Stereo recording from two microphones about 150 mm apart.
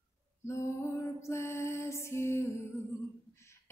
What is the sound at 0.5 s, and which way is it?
Music, 20° left (ahead or behind).